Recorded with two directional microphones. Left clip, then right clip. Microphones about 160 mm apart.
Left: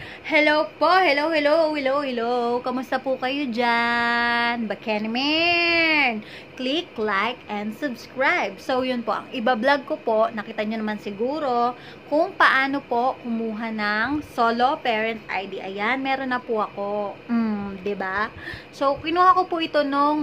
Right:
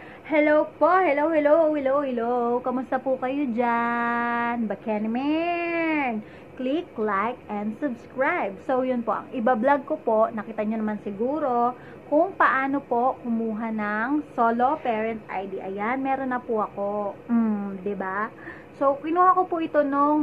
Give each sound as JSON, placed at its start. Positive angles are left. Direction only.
{"t": 0.3, "sound": "a woman's voice", "side_deg": 20}